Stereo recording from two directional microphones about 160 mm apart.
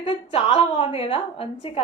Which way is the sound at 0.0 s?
35° left (ahead or behind).